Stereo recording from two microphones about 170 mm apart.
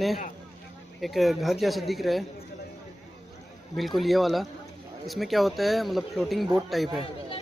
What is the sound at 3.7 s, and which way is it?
Speech, centre (ahead or behind).